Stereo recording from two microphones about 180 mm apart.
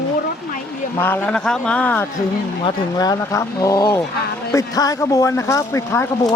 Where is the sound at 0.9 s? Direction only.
10° left (ahead or behind).